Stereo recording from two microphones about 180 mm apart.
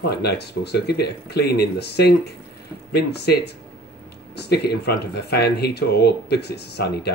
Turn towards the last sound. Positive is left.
turn(degrees=65)  # may be behind; listen again after turning